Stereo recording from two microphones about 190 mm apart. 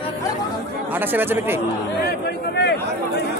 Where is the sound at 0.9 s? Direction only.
10° right (ahead or behind).